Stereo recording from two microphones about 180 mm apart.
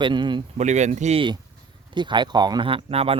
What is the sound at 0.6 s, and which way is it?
Speech, 40° right (ahead or behind).